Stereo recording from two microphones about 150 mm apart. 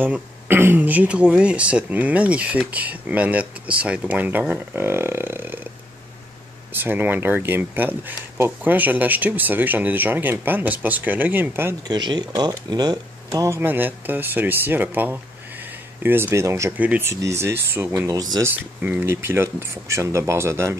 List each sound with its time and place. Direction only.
0.0 s speech: 15° right (ahead or behind)
6.7 s speech: 15° right (ahead or behind)
11.9 s speech: 30° right (ahead or behind)
18.5 s speech: 10° right (ahead or behind)